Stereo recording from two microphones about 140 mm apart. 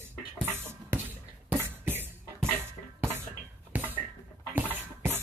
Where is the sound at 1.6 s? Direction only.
15° right (ahead or behind).